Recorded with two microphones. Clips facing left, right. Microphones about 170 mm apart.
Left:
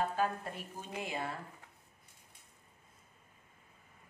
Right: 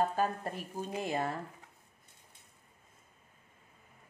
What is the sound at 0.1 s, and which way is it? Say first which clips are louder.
Speech: right 2 dB; 40° right (ahead or behind).